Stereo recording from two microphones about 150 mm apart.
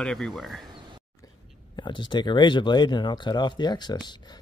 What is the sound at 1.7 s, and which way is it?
Speech, 30° left (ahead or behind).